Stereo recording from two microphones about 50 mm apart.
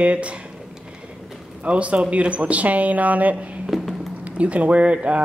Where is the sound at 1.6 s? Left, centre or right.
Right.